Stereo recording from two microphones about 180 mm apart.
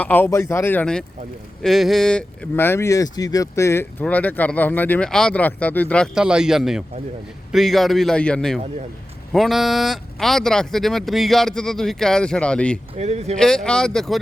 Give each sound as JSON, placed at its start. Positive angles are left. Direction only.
{"t": 0.0, "sound": "speech", "side_deg": 10}
{"t": 6.1, "sound": "speech", "side_deg": -5}
{"t": 13.0, "sound": "speech", "side_deg": -35}
{"t": 13.4, "sound": "speech", "side_deg": 0}